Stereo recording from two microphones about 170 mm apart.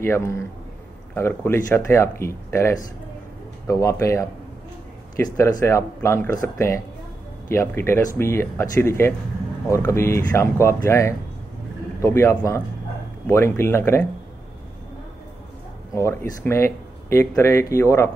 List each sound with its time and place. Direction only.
0.0 s speech: 15° left (ahead or behind)
5.4 s speech: 20° left (ahead or behind)
15.9 s speech: 15° left (ahead or behind)